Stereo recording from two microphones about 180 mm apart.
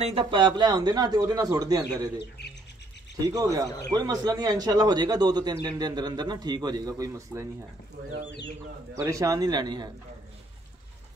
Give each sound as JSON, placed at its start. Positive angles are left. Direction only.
{"t": 0.0, "sound": "a man's voice", "side_deg": -30}
{"t": 3.3, "sound": "a man's voice", "side_deg": -20}
{"t": 9.0, "sound": "a man's voice", "side_deg": -20}